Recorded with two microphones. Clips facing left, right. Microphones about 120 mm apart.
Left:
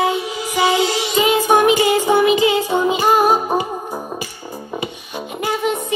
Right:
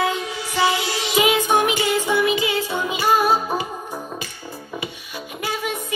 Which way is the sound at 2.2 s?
20° left (ahead or behind).